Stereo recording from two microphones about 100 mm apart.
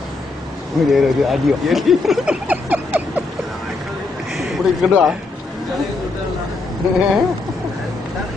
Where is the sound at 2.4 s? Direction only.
15° right (ahead or behind).